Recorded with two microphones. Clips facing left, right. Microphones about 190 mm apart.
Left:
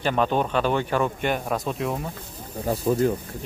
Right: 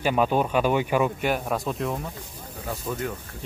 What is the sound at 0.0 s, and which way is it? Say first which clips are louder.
Speech: even; 10° right (ahead or behind).